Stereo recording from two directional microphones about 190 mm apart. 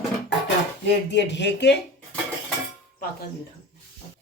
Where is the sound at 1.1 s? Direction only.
70° left (ahead or behind).